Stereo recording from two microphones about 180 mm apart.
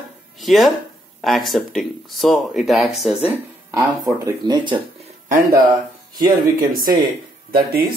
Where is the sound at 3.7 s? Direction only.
20° right (ahead or behind).